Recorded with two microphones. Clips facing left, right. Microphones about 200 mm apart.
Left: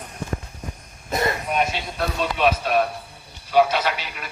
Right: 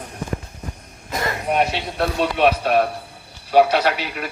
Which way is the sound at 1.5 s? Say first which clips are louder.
Right 3 dB; 65° right (ahead or behind).